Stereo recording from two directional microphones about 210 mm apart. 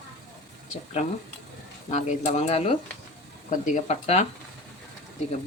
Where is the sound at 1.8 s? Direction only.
35° left (ahead or behind).